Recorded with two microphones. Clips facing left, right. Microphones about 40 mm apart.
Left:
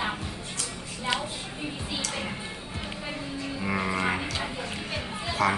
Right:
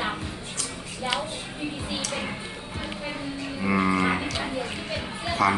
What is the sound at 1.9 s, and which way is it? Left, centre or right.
Music, centre.